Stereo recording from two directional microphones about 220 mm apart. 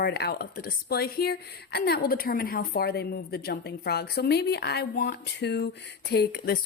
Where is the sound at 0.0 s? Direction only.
45° left (ahead or behind).